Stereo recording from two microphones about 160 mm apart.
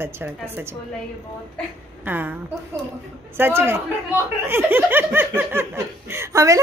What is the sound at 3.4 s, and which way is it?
Speech, 15° right (ahead or behind).